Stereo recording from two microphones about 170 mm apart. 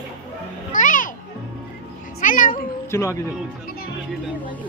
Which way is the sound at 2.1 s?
50° left (ahead or behind).